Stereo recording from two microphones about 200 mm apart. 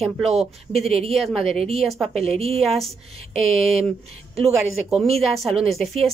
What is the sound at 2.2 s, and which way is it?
Speech, 30° right (ahead or behind).